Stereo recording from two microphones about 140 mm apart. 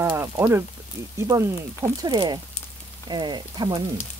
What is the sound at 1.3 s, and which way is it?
Speech, 25° right (ahead or behind).